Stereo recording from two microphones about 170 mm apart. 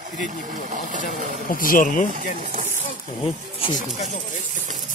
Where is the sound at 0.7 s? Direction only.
50° right (ahead or behind).